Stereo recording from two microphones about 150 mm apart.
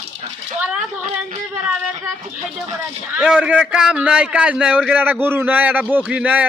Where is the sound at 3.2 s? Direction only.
5° right (ahead or behind).